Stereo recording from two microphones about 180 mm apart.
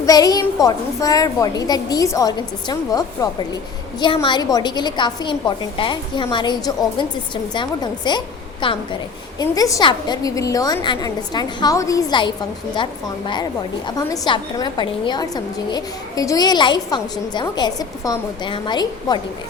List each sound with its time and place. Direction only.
0.0 s a woman's voice: 20° left (ahead or behind)